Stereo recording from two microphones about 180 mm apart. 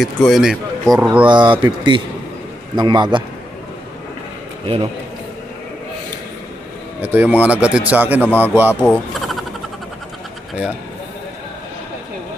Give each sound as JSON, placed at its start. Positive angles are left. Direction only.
{"t": 0.0, "sound": "a man's voice", "side_deg": 0}
{"t": 1.2, "sound": "speech", "side_deg": -25}
{"t": 4.7, "sound": "a man's voice", "side_deg": -35}
{"t": 7.0, "sound": "speech", "side_deg": -10}
{"t": 8.2, "sound": "speech", "side_deg": 10}
{"t": 8.8, "sound": "a sound", "side_deg": 0}